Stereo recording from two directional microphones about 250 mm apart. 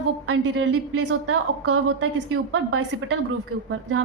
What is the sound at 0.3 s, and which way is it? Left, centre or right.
A woman's voice, right.